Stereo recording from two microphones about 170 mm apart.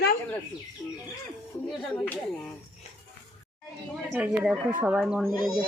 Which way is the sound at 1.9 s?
10° left (ahead or behind).